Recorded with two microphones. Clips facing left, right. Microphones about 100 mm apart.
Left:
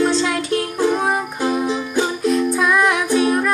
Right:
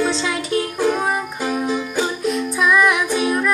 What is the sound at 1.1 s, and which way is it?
Music, 20° left (ahead or behind).